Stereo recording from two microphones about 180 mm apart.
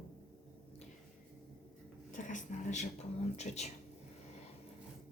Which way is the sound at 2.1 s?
45° left (ahead or behind).